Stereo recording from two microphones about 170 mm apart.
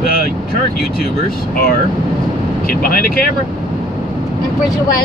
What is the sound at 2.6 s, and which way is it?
Speech, 60° left (ahead or behind).